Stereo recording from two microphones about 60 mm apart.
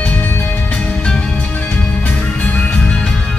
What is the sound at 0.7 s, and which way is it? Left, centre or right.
Music, centre.